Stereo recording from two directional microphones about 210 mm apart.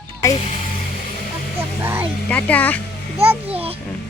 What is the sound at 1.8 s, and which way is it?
Speech, 10° right (ahead or behind).